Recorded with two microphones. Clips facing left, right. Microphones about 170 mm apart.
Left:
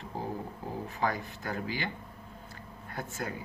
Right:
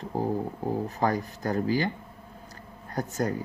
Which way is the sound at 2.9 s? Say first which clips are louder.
Right 9 dB; 40° right (ahead or behind).